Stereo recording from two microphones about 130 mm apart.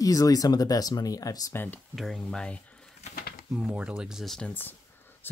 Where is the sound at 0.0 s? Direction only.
25° left (ahead or behind).